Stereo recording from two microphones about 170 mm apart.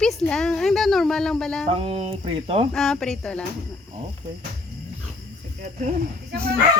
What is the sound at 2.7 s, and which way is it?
Speech, centre (ahead or behind).